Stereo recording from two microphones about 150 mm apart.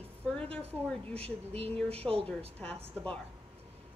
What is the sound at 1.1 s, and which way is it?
Speech, 40° right (ahead or behind).